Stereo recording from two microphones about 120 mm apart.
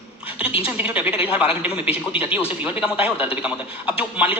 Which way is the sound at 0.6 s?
10° right (ahead or behind).